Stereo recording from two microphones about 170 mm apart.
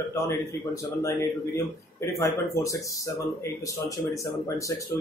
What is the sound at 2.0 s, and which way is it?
Speech, 15° left (ahead or behind).